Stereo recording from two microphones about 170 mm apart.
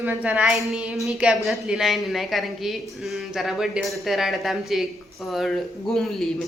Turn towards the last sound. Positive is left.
turn(degrees=0)  # may be behind; listen again after turning